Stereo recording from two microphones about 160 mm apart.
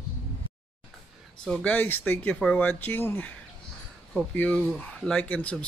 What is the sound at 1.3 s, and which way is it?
Speech, 5° left (ahead or behind).